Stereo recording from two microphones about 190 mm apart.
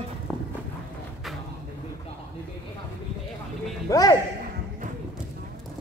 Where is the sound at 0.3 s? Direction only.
Centre (ahead or behind).